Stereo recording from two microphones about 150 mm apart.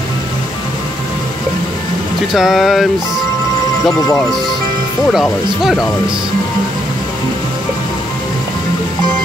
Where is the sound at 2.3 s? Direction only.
Centre (ahead or behind).